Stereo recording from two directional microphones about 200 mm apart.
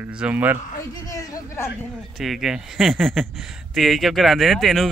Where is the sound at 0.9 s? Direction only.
15° left (ahead or behind).